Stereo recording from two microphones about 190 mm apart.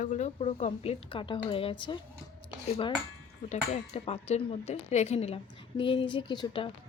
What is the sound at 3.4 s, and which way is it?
Speech, 35° left (ahead or behind).